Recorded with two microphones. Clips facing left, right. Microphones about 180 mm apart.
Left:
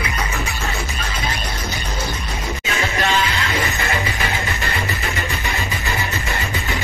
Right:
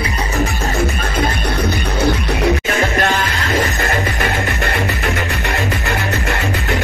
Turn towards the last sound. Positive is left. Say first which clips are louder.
# right 5 dB
turn(degrees=-65)  # may be behind; listen again after turning